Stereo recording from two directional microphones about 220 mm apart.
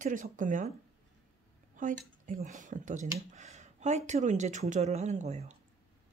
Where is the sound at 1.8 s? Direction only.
35° right (ahead or behind).